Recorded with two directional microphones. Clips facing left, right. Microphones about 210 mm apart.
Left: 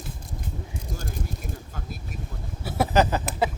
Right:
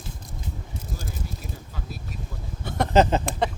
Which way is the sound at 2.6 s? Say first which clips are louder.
Left 1 dB; 5° left (ahead or behind).